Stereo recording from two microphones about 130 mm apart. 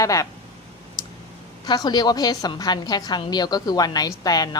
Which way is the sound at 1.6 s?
30° left (ahead or behind).